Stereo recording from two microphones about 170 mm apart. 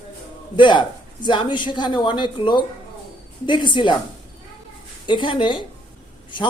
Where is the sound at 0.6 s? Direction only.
30° left (ahead or behind).